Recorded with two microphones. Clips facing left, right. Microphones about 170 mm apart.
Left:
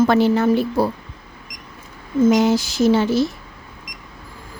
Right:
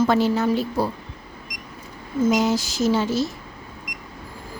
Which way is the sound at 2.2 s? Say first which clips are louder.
Left 4 dB; 60° left (ahead or behind).